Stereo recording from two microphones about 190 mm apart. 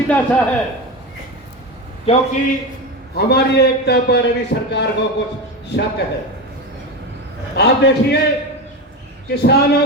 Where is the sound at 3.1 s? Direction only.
60° left (ahead or behind).